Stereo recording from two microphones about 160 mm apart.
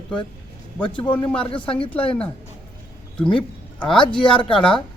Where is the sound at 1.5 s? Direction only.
35° left (ahead or behind).